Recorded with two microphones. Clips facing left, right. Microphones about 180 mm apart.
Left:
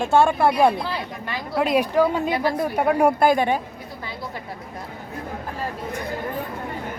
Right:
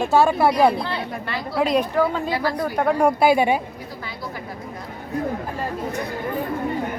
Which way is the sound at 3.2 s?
10° right (ahead or behind).